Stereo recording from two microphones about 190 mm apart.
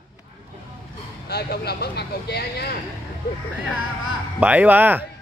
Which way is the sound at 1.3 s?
55° left (ahead or behind).